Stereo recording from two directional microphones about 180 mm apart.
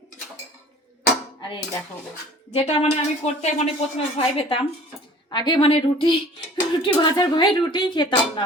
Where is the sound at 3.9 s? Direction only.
30° left (ahead or behind).